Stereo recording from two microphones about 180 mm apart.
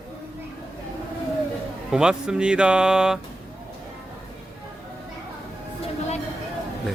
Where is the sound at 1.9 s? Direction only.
5° right (ahead or behind).